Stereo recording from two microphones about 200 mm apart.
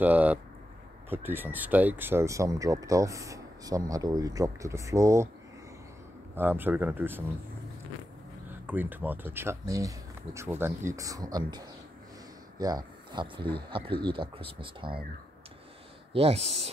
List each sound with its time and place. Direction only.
0.0 s speech: 10° right (ahead or behind)
6.3 s speech: 10° right (ahead or behind)
8.5 s speech: 10° right (ahead or behind); by 15.0 s 25° right (ahead or behind)
16.1 s speech: 30° right (ahead or behind)